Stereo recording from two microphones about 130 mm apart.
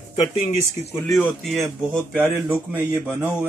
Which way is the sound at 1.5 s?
5° left (ahead or behind).